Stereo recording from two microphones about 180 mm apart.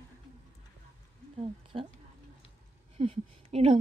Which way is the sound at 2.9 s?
30° right (ahead or behind).